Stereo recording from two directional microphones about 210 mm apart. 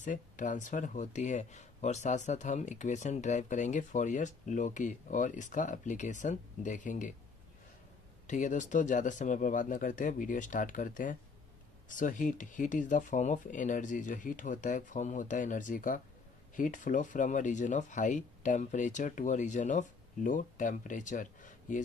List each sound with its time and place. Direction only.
0.0 s speech: 35° left (ahead or behind)
8.3 s speech: 35° left (ahead or behind)